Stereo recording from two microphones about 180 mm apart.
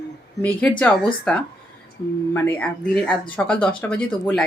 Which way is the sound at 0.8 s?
5° left (ahead or behind).